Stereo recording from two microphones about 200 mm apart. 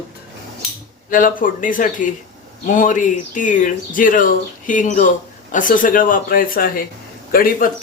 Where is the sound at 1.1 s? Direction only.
45° left (ahead or behind).